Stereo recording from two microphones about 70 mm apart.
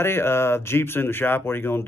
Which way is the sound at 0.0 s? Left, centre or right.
Left.